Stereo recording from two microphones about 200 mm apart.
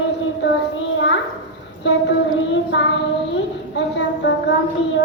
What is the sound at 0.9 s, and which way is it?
Speech, 70° left (ahead or behind).